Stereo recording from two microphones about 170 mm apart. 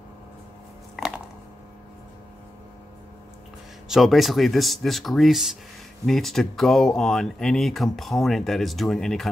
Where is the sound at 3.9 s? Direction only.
Centre (ahead or behind).